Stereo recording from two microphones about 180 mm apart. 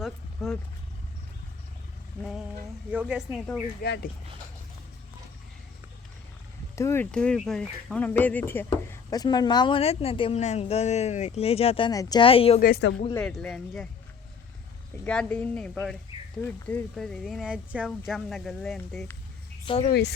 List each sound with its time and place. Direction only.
0.0 s vehicle: centre (ahead or behind)
2.9 s speech: 10° right (ahead or behind)
3.8 s speech: 65° left (ahead or behind)
6.7 s speech: 15° left (ahead or behind); by 11.9 s 35° left (ahead or behind)
11.9 s speech: 20° left (ahead or behind)
12.5 s a woman's voice: 55° left (ahead or behind)
13.1 s speech: 5° left (ahead or behind)
15.0 s speech: 5° left (ahead or behind)
19.6 s speech: 30° left (ahead or behind)